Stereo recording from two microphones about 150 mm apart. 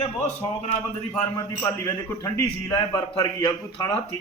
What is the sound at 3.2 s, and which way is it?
Speech, 25° left (ahead or behind).